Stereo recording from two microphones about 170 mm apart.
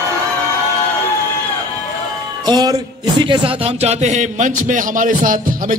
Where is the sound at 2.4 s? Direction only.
25° right (ahead or behind).